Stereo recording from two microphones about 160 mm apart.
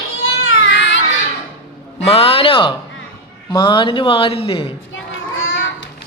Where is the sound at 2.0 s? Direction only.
35° left (ahead or behind).